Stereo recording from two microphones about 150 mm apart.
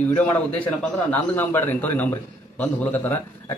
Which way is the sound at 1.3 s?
15° left (ahead or behind).